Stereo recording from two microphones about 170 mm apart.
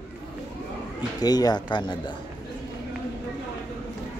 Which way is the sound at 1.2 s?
25° left (ahead or behind).